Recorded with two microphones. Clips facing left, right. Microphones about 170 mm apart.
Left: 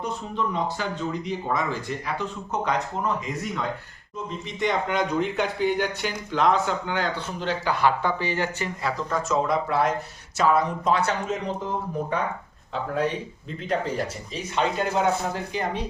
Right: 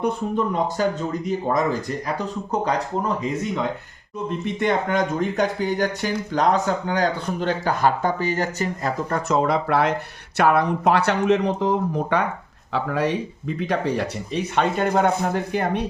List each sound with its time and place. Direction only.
0.0 s speech: 55° right (ahead or behind); by 2.8 s 35° right (ahead or behind)
3.2 s speech: 25° right (ahead or behind)
4.3 s speech: 60° right (ahead or behind); by 8.9 s 40° right (ahead or behind)
9.0 s speech: 65° right (ahead or behind)
12.7 s speech: 90° right
13.6 s speech: 70° right (ahead or behind)